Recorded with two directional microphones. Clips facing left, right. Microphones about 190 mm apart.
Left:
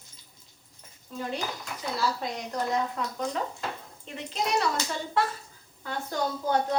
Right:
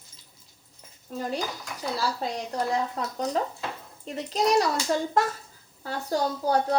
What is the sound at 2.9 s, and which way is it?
A woman's voice, 35° right (ahead or behind).